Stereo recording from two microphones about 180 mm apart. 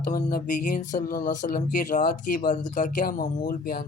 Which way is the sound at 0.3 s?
50° left (ahead or behind).